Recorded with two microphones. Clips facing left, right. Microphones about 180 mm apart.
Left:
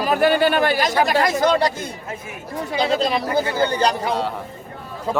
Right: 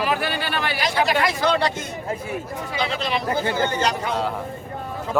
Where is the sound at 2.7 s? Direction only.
40° left (ahead or behind).